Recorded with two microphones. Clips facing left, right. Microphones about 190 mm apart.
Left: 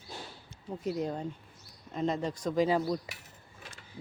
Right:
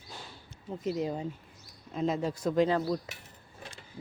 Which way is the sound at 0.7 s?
Centre (ahead or behind).